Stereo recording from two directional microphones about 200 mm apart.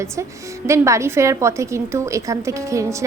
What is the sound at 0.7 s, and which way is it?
A woman's voice, 15° right (ahead or behind).